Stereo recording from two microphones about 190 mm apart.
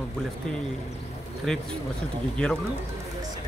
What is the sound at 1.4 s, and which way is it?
Speech, centre (ahead or behind).